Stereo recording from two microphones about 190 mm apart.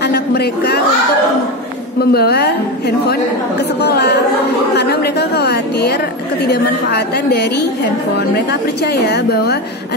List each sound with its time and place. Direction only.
0.0 s speech: 60° left (ahead or behind)
2.0 s a woman's voice: 60° left (ahead or behind)
3.8 s a woman's voice: 60° left (ahead or behind)